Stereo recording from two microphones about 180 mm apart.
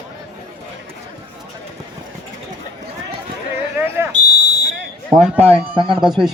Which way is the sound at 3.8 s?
10° right (ahead or behind).